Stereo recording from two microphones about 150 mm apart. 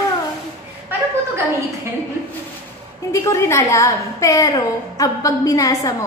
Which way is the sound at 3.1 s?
20° left (ahead or behind).